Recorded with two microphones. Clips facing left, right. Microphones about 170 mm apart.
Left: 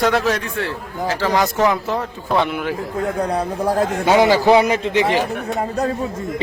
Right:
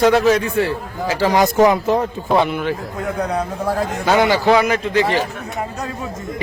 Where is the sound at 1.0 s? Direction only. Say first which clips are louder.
Right 3 dB; 15° right (ahead or behind).